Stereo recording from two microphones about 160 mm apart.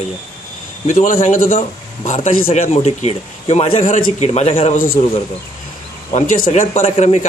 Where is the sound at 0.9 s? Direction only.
55° left (ahead or behind).